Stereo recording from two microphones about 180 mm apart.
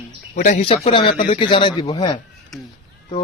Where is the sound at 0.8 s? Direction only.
30° left (ahead or behind).